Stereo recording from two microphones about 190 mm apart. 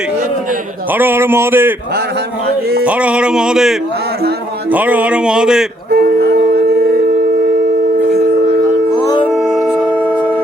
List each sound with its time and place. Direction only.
0.9 s a man's voice: 10° right (ahead or behind)
2.8 s speech: 5° right (ahead or behind)
5.9 s a sound: 55° right (ahead or behind)
9.3 s music: centre (ahead or behind)